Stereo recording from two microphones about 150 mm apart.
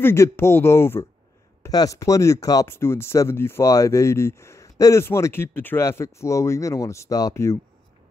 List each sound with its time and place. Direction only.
0.0 s speech: 15° left (ahead or behind)